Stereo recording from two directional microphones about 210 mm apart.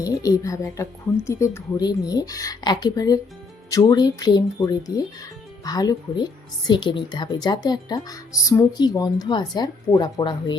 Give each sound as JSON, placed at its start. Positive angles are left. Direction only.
{"t": 0.0, "sound": "a woman's voice", "side_deg": 15}